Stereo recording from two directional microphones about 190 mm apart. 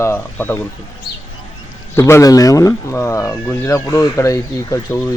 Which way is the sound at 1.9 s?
15° left (ahead or behind).